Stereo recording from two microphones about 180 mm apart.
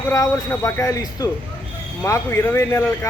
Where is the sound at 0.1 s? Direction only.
20° left (ahead or behind).